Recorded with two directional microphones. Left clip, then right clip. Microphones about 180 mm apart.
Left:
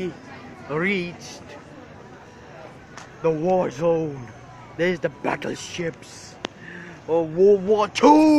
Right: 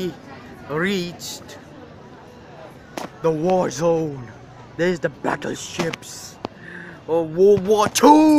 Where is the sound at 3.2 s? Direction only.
5° right (ahead or behind).